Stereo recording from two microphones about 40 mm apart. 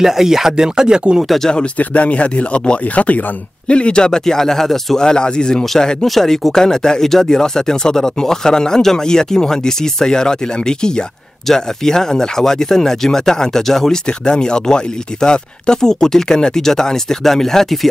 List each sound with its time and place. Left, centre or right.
0.0 s speech: centre
1.8 s speech: left; by 5.0 s centre
5.0 s speech: left
14.2 s speech: centre